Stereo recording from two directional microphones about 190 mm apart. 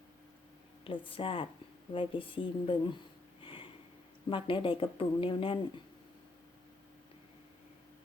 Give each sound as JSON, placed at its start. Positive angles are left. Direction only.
{"t": 0.9, "sound": "speech", "side_deg": 30}
{"t": 3.4, "sound": "sniff", "side_deg": 25}
{"t": 4.3, "sound": "speech", "side_deg": 25}